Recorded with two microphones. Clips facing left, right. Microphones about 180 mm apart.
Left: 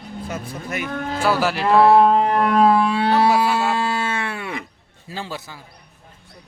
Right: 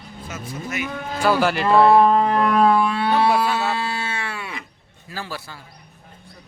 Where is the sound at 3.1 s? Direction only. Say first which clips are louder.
Left 2 dB; 5° left (ahead or behind).